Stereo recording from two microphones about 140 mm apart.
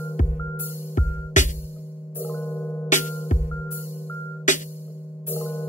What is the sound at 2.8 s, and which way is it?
Music, 60° left (ahead or behind).